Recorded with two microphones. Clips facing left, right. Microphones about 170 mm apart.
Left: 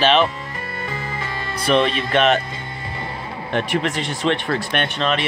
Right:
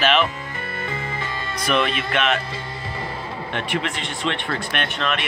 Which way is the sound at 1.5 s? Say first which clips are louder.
Left 4 dB; 30° left (ahead or behind).